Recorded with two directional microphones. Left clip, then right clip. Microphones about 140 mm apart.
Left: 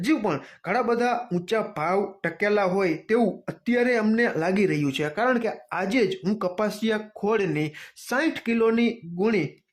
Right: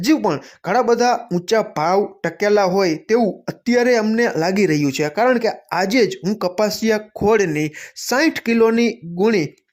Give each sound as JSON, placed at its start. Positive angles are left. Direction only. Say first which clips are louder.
{"t": 0.0, "sound": "speech", "louder": "right 7 dB", "side_deg": -30}
{"t": 1.3, "sound": "speech", "louder": "right 8 dB", "side_deg": -25}
{"t": 1.5, "sound": "speech", "louder": "right 8 dB", "side_deg": -35}
{"t": 4.0, "sound": "speech", "louder": "right 5 dB", "side_deg": -25}
{"t": 8.1, "sound": "speech", "louder": "right 8 dB", "side_deg": -40}